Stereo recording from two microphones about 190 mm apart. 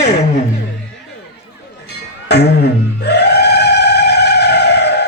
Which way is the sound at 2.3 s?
60° left (ahead or behind).